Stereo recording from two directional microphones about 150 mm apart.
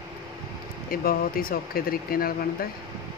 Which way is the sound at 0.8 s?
75° left (ahead or behind).